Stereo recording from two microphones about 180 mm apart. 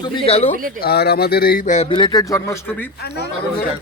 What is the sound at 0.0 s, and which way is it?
Speech, 35° left (ahead or behind).